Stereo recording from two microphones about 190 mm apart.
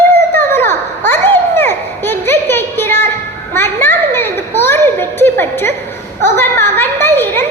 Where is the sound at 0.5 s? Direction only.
10° left (ahead or behind).